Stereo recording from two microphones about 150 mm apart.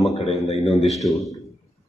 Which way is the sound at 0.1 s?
45° left (ahead or behind).